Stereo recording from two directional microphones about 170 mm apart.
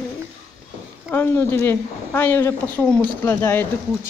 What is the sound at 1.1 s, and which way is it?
A woman's voice, 15° left (ahead or behind).